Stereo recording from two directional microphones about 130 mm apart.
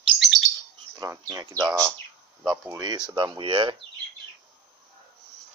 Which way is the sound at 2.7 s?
30° right (ahead or behind).